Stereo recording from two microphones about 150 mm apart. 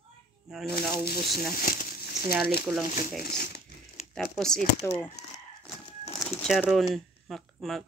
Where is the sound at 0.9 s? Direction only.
90° left.